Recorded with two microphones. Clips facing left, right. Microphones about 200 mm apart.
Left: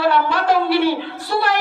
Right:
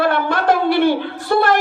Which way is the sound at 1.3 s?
50° right (ahead or behind).